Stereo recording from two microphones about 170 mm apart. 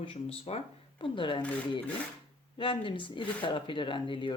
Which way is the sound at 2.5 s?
30° left (ahead or behind).